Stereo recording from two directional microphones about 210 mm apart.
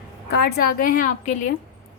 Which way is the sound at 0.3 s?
45° left (ahead or behind).